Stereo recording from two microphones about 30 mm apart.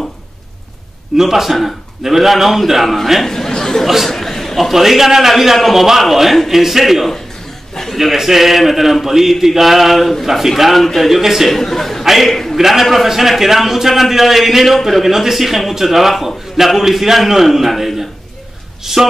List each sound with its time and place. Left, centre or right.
1.1 s speech: centre
3.3 s chatter: centre
3.8 s speech: centre
4.1 s a sound: centre
4.7 s a man's voice: centre
7.7 s chuckle: centre
8.0 s a man's voice: centre
11.4 s a sound: centre
12.0 s a sound: centre
12.3 s a man's voice: centre
12.5 s a man's voice: centre